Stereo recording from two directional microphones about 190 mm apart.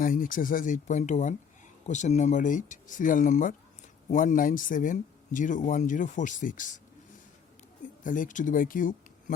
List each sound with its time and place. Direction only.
0.0 s speech: 45° left (ahead or behind)
8.0 s speech: 45° left (ahead or behind)